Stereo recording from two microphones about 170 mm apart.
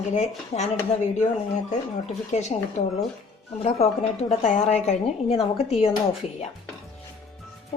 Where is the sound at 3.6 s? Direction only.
40° left (ahead or behind).